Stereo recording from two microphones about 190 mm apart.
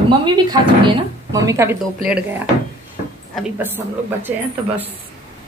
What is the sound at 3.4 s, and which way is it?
Dishes, 10° right (ahead or behind).